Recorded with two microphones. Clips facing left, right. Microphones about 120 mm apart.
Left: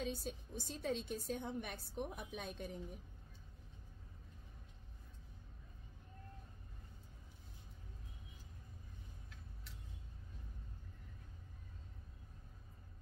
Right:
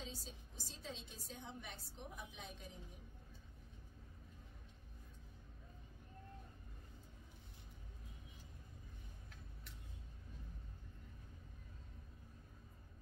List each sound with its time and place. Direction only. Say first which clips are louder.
0.0 s a woman's voice: left 9 dB; 65° left (ahead or behind)